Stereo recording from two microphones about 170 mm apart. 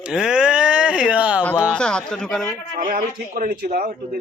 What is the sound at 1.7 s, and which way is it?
Speech, 5° left (ahead or behind).